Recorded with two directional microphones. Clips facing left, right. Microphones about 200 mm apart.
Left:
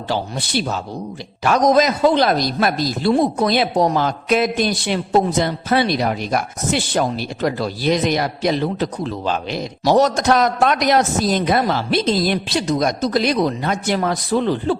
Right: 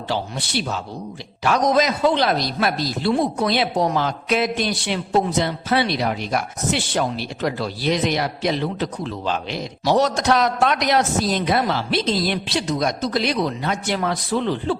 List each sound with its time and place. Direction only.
0.1 s speech: 40° left (ahead or behind)